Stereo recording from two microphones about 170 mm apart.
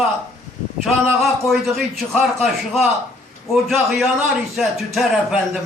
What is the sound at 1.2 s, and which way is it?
A man's voice, centre (ahead or behind).